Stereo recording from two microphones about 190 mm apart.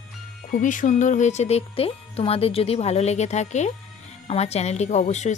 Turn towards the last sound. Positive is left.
turn(degrees=40)  # may be behind; listen again after turning